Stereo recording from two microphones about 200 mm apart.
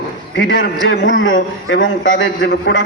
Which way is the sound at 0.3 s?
70° left (ahead or behind).